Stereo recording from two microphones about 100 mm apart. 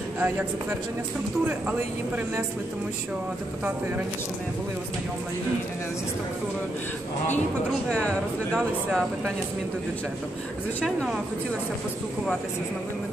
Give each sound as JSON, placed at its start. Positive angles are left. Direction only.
{"t": 0.2, "sound": "a man's voice", "side_deg": -15}
{"t": 7.9, "sound": "speech", "side_deg": 10}